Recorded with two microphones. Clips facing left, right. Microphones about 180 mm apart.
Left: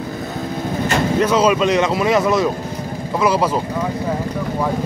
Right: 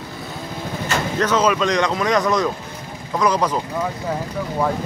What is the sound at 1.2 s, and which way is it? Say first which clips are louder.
Speech: left 2 dB; 10° left (ahead or behind).